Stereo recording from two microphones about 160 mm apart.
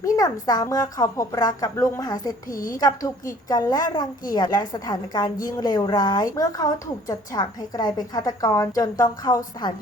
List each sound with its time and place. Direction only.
0.0 s a woman's voice: 25° left (ahead or behind)
2.5 s a woman's voice: 60° left (ahead or behind)
2.7 s a woman's voice: 20° left (ahead or behind)